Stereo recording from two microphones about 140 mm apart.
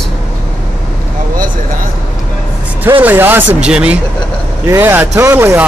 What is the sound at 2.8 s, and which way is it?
Speech, 15° right (ahead or behind).